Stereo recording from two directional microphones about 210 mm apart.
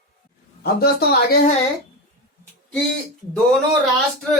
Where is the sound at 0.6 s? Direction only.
50° left (ahead or behind).